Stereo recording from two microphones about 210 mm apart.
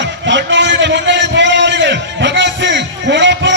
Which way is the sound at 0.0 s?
60° right (ahead or behind).